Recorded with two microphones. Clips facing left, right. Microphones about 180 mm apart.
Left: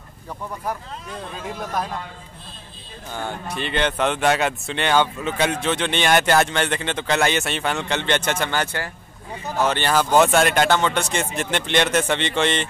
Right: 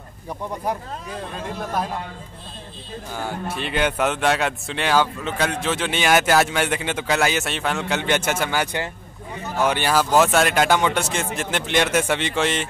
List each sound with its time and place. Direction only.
1.1 s speech: centre (ahead or behind)
3.1 s speech: 5° right (ahead or behind)